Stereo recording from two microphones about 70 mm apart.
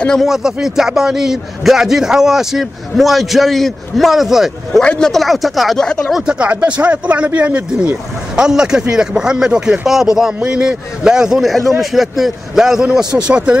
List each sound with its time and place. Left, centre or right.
0.2 s a man's voice: centre
4.8 s a man's voice: centre
5.8 s speech: centre
6.1 s a man's voice: centre